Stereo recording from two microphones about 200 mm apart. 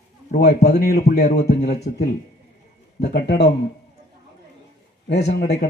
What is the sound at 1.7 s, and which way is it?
Speech, 35° left (ahead or behind).